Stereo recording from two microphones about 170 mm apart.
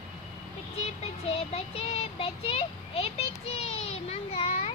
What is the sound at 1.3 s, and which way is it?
Child singing, 35° left (ahead or behind).